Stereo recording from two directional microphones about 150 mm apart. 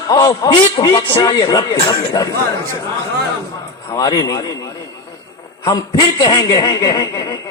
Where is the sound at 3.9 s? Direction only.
25° left (ahead or behind).